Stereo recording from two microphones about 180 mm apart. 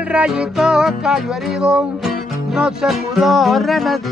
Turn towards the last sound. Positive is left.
turn(degrees=0)  # may be behind; listen again after turning